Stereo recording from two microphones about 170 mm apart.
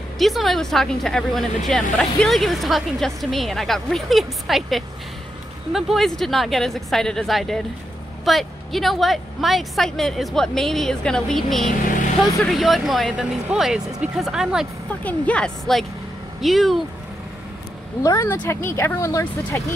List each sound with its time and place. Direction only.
0.2 s speech: centre (ahead or behind)
15.0 s speech: 5° left (ahead or behind)
18.0 s speech: 15° left (ahead or behind)